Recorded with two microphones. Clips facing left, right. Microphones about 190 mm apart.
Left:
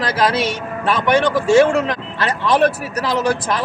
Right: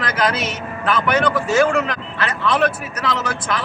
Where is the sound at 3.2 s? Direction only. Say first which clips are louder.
Left 5 dB; 35° left (ahead or behind).